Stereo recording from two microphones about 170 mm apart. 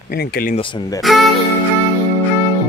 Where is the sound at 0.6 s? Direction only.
25° left (ahead or behind).